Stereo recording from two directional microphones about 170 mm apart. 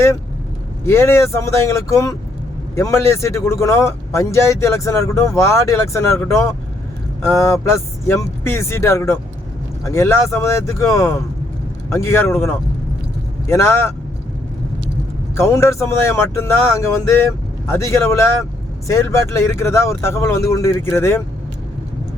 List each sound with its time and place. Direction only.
0.9 s speech: 15° left (ahead or behind)
15.4 s speech: 15° left (ahead or behind)